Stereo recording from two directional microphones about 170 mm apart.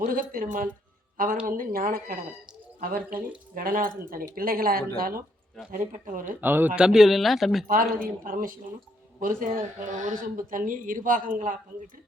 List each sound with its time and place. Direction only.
0.0 s speech: 55° right (ahead or behind)
6.4 s speech: 10° right (ahead or behind)
7.7 s speech: 55° right (ahead or behind)